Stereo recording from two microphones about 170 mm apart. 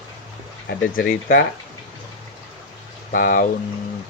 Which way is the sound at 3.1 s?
55° left (ahead or behind).